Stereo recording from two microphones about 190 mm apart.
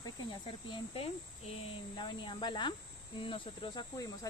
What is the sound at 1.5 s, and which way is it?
Cricket, 25° left (ahead or behind).